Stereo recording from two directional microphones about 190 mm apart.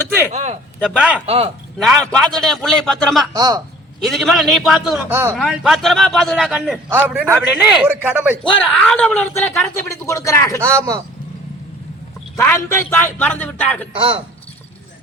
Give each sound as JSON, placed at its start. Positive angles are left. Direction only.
{"t": 0.3, "sound": "speech", "side_deg": -35}
{"t": 0.8, "sound": "a man's voice", "side_deg": -5}
{"t": 1.3, "sound": "speech", "side_deg": -30}
{"t": 1.8, "sound": "a man's voice", "side_deg": 0}
{"t": 3.3, "sound": "a man's voice", "side_deg": -20}
{"t": 4.0, "sound": "a man's voice", "side_deg": 0}
{"t": 8.5, "sound": "a man's voice", "side_deg": 5}
{"t": 10.6, "sound": "a man's voice", "side_deg": -15}
{"t": 12.4, "sound": "a man's voice", "side_deg": 15}
{"t": 13.9, "sound": "a man's voice", "side_deg": -25}